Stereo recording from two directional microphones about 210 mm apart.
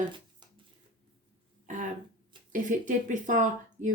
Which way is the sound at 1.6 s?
35° right (ahead or behind).